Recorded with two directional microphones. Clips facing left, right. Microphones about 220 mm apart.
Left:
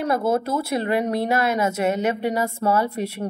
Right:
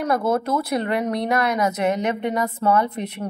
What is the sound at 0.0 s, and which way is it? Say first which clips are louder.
Speech: even; 25° left (ahead or behind).